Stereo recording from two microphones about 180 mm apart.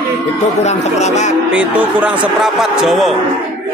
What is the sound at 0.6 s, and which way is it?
Speech, 40° left (ahead or behind).